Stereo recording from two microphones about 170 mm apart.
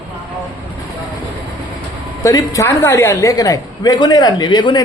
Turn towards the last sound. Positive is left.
turn(degrees=25)  # may be behind; listen again after turning